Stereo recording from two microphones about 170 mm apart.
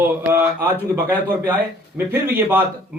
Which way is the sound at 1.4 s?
10° right (ahead or behind).